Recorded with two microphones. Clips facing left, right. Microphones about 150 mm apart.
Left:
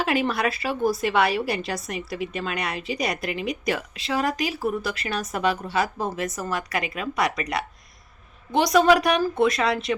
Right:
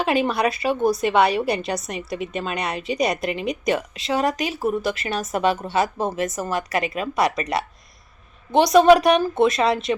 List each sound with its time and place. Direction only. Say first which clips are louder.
0.0 s a woman's voice: right 3 dB; 20° right (ahead or behind)